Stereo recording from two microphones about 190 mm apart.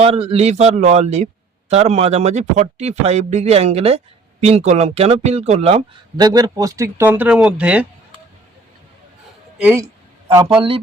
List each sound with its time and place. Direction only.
0.0 s speech: 30° right (ahead or behind); by 7.9 s 5° right (ahead or behind)
9.6 s speech: 10° right (ahead or behind)
10.2 s speech: 25° right (ahead or behind)